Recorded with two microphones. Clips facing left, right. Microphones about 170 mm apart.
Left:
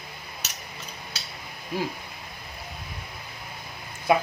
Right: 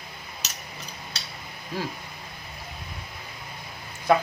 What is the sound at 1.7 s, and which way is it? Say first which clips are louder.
Speech: left 2 dB; 15° left (ahead or behind).